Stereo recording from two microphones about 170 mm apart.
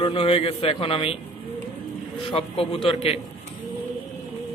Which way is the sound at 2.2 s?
35° left (ahead or behind).